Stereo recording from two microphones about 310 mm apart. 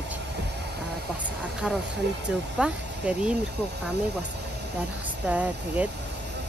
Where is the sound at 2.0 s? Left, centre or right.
Right.